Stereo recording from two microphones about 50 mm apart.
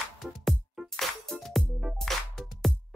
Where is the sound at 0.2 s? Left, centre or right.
Centre.